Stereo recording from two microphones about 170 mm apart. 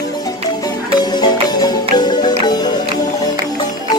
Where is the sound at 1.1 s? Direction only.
25° left (ahead or behind).